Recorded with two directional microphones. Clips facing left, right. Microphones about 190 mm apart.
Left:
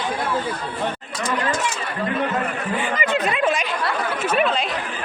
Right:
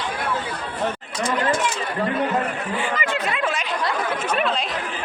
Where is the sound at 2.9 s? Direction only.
20° left (ahead or behind).